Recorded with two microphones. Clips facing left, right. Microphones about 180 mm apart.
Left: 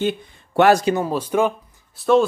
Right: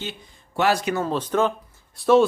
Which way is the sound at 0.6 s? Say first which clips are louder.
Left 7 dB; 50° left (ahead or behind).